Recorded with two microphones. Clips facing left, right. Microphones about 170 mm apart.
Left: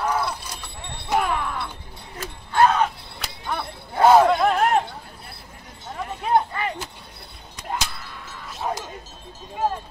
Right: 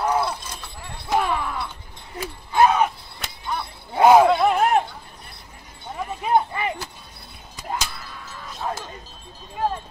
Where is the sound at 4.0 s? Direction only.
10° right (ahead or behind).